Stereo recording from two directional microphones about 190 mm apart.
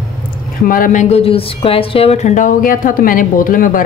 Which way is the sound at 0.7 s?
45° left (ahead or behind).